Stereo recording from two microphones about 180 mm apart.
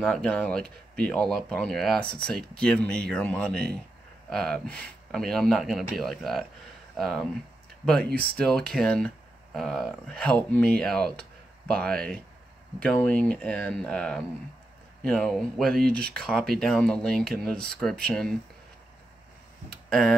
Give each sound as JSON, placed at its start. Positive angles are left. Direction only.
{"t": 0.0, "sound": "speech", "side_deg": 5}
{"t": 19.9, "sound": "speech", "side_deg": 0}